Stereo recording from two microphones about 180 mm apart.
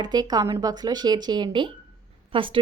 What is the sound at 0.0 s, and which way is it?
Speech, 20° right (ahead or behind).